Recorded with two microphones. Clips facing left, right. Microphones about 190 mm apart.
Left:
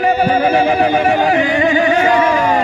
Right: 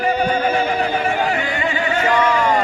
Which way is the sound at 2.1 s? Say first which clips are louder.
Left 4 dB; 10° left (ahead or behind).